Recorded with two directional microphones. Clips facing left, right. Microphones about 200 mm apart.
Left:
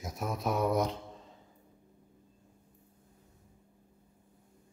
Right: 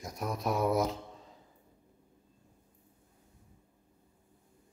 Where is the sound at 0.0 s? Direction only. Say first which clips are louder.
Even; centre (ahead or behind).